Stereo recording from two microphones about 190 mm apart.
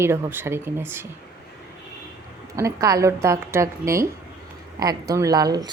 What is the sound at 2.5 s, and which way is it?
A woman's voice, 15° right (ahead or behind).